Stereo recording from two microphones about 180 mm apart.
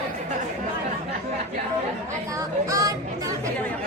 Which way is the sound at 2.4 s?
20° right (ahead or behind).